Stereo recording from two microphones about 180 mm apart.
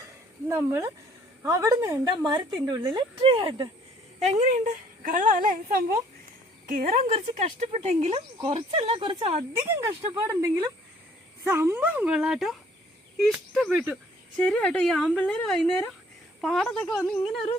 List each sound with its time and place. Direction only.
0.4 s a woman's voice: 15° right (ahead or behind)
4.2 s a woman's voice: 40° right (ahead or behind)
7.1 s speech: 35° right (ahead or behind)
9.6 s a woman's voice: 15° right (ahead or behind); by 17.1 s 10° left (ahead or behind)